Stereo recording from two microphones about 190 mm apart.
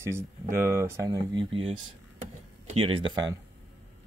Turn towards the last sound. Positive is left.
turn(degrees=-25)  # may be behind; listen again after turning